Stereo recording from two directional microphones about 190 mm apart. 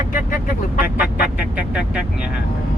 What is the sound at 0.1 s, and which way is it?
Vehicle, 45° left (ahead or behind).